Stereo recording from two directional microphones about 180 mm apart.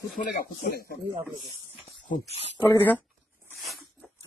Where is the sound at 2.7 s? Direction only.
10° left (ahead or behind).